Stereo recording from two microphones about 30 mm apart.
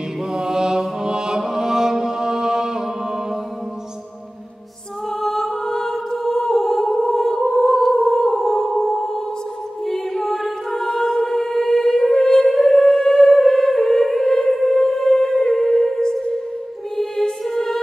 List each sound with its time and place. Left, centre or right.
0.3 s mantra: right
5.2 s a capella: centre
6.6 s music: centre
7.5 s humming: left
8.1 s a sound: centre
8.9 s a sound: left
9.8 s music: centre
12.7 s music: left
16.0 s music: left
16.9 s music: centre